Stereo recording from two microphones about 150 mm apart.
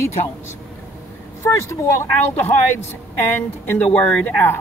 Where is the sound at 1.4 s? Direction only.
20° left (ahead or behind).